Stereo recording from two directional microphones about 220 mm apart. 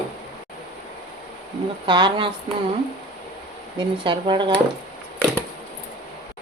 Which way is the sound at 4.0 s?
20° right (ahead or behind).